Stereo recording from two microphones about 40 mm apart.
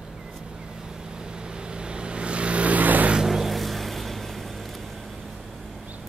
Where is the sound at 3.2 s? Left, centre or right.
Centre.